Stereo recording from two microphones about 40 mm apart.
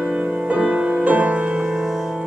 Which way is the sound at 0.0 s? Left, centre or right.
Right.